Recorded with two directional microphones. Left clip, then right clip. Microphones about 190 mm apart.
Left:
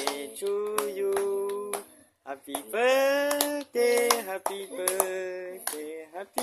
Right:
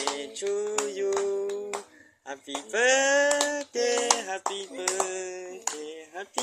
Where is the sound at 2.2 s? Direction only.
15° left (ahead or behind).